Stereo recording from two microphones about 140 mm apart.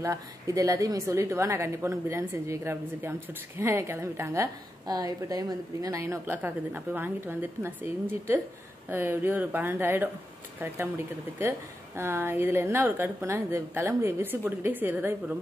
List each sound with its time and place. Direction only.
0.0 s a woman's voice: 25° right (ahead or behind)
12.0 s a woman's voice: 15° right (ahead or behind)